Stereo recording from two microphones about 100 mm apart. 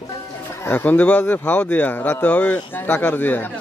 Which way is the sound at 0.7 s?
15° left (ahead or behind).